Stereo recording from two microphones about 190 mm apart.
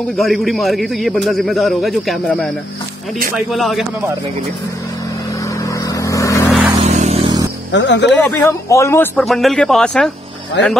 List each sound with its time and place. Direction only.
0.2 s a man's voice: centre (ahead or behind)
5.9 s vehicle: 15° left (ahead or behind)
6.8 s a sound: 35° right (ahead or behind)
7.7 s speech: 70° left (ahead or behind)
8.1 s speech: 5° left (ahead or behind)
9.1 s a man's voice: centre (ahead or behind)
10.6 s speech: 70° left (ahead or behind)